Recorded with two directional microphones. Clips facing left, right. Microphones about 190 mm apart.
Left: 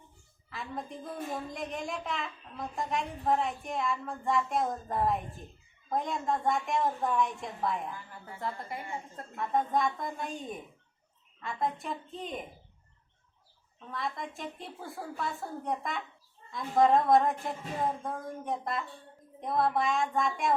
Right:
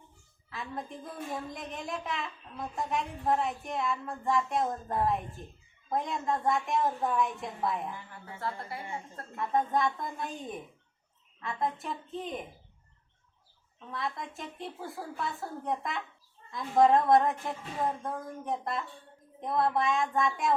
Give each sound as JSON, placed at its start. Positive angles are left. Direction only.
{"t": 0.5, "sound": "speech", "side_deg": 0}
{"t": 8.4, "sound": "a woman's voice", "side_deg": 20}
{"t": 9.3, "sound": "speech", "side_deg": 0}
{"t": 13.9, "sound": "speech", "side_deg": 0}